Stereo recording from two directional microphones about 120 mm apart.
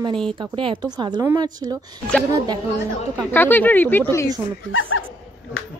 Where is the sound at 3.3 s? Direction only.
15° left (ahead or behind).